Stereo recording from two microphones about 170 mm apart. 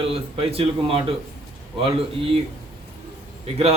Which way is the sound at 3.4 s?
35° right (ahead or behind).